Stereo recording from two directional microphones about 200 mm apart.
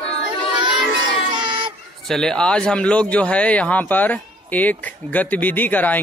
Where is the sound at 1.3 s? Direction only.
25° right (ahead or behind).